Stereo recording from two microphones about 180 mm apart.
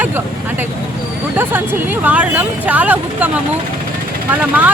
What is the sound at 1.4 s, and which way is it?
Speech, 10° right (ahead or behind).